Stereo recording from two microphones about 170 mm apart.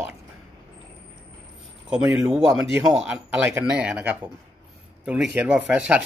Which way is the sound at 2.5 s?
15° right (ahead or behind).